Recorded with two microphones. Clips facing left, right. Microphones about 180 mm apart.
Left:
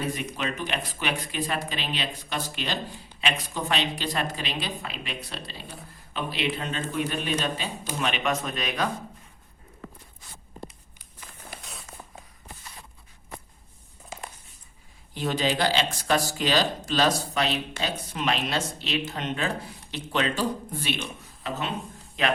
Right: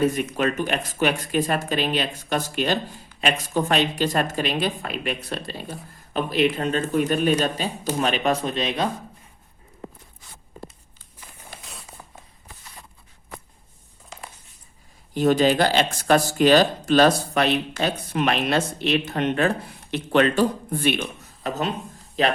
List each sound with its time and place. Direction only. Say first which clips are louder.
0.3 s speech: right 7 dB; 45° right (ahead or behind); by 8.9 s 25° right (ahead or behind)
11.5 s a sound: right 1 dB; centre (ahead or behind)
15.1 s speech: right 8 dB; 50° right (ahead or behind)
21.4 s speech: right 5 dB; 40° right (ahead or behind)